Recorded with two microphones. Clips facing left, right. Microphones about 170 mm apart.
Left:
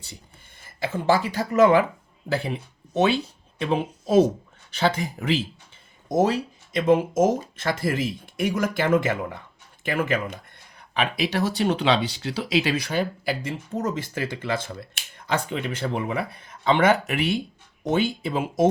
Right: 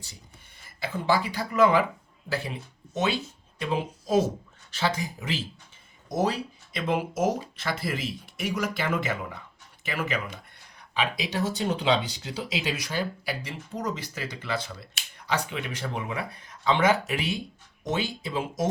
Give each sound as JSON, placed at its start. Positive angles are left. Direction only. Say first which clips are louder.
{"t": 0.8, "sound": "speech", "louder": "left 4 dB", "side_deg": 45}
{"t": 3.6, "sound": "speech", "louder": "left 4 dB", "side_deg": 65}
{"t": 6.1, "sound": "speech", "louder": "left 5 dB", "side_deg": 50}
{"t": 10.9, "sound": "speech", "louder": "left 4 dB", "side_deg": 65}